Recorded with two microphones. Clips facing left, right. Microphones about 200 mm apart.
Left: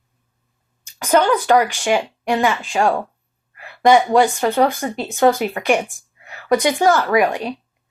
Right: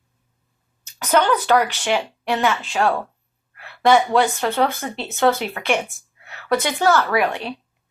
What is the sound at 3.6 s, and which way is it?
Speech, 15° left (ahead or behind).